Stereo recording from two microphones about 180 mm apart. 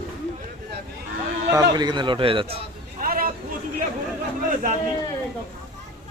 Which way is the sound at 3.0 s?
50° right (ahead or behind).